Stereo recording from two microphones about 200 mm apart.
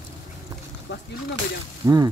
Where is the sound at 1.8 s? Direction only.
20° right (ahead or behind).